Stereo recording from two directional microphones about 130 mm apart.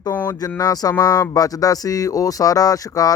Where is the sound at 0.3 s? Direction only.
25° left (ahead or behind).